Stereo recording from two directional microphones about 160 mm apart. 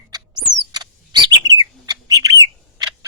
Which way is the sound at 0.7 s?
25° right (ahead or behind).